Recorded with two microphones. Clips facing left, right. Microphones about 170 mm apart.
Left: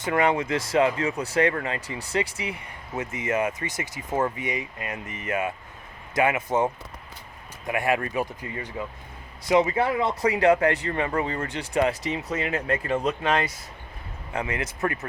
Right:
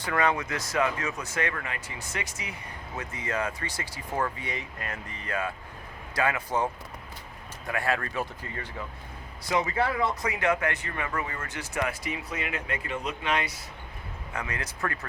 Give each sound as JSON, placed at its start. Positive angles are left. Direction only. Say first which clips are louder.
{"t": 0.0, "sound": "speech", "louder": "left 4 dB", "side_deg": 25}
{"t": 7.7, "sound": "speech", "louder": "left 5 dB", "side_deg": 15}
{"t": 10.2, "sound": "speech", "louder": "left 7 dB", "side_deg": 30}
{"t": 12.3, "sound": "speech", "louder": "left 10 dB", "side_deg": 40}
{"t": 14.3, "sound": "speech", "louder": "left 6 dB", "side_deg": 25}